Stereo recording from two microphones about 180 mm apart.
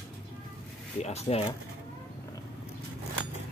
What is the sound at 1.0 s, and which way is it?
Speech, 35° left (ahead or behind).